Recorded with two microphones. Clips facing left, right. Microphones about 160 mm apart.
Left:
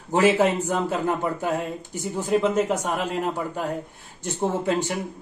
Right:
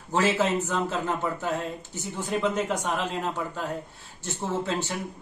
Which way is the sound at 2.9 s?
45° left (ahead or behind).